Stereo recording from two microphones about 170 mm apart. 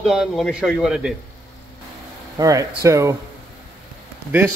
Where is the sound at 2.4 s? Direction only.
20° right (ahead or behind).